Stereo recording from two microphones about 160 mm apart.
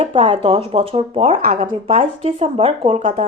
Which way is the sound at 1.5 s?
45° right (ahead or behind).